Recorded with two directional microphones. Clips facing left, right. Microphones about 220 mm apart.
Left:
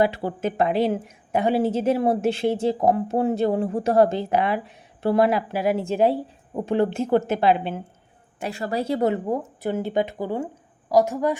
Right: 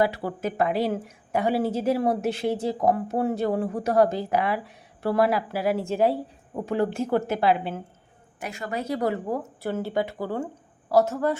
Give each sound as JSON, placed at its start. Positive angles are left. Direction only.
{"t": 0.0, "sound": "a woman's voice", "side_deg": 25}